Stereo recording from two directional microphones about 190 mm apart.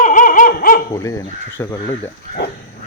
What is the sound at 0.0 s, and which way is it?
Dog, 45° left (ahead or behind).